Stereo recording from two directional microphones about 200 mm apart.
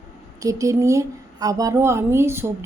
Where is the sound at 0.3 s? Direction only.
15° right (ahead or behind).